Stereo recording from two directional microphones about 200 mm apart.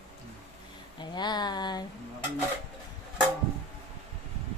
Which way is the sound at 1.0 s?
20° left (ahead or behind).